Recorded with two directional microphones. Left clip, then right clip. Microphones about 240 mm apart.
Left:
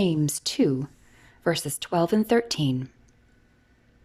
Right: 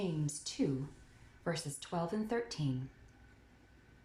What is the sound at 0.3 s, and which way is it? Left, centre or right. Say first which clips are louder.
Speech: left 13 dB; left.